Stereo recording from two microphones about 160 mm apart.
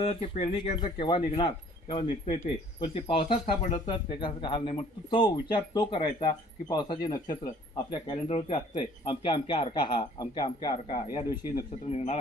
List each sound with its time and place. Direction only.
0.0 s speech: 40° left (ahead or behind)